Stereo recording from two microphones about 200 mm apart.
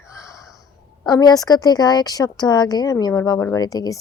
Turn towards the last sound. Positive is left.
turn(degrees=20)  # may be behind; listen again after turning